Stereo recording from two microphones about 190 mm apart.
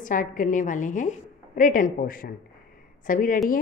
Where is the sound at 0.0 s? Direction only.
45° left (ahead or behind).